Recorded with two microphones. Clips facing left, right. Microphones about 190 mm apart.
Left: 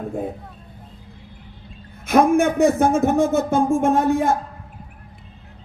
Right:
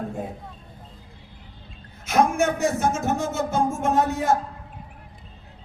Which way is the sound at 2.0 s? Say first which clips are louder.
Left 5 dB; 55° left (ahead or behind).